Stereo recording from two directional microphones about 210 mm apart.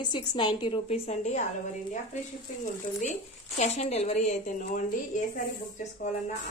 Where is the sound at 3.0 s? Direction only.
35° left (ahead or behind).